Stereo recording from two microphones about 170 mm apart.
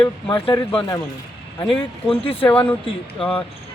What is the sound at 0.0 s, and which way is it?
Speech, 30° left (ahead or behind).